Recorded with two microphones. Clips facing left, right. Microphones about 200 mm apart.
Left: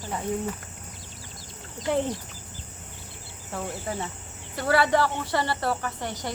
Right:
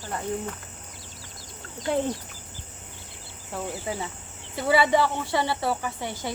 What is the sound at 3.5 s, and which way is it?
Speech, 5° right (ahead or behind).